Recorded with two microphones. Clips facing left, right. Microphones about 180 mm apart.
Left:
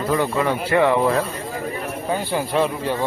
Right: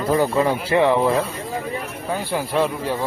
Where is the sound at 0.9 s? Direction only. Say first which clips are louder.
Even; centre (ahead or behind).